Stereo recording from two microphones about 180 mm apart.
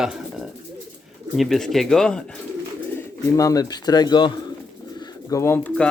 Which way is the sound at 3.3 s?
20° left (ahead or behind).